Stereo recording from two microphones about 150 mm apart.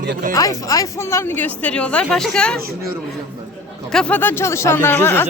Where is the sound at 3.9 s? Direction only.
5° left (ahead or behind).